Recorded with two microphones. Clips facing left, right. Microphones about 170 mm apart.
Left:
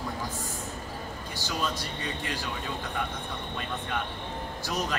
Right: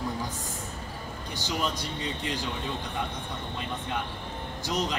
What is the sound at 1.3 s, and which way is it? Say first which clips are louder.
Speech: right 1 dB; 20° right (ahead or behind).